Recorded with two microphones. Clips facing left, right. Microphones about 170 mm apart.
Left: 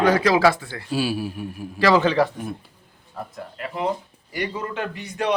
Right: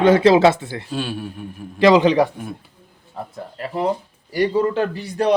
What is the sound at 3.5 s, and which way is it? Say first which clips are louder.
A man's voice: right 4 dB; 35° right (ahead or behind).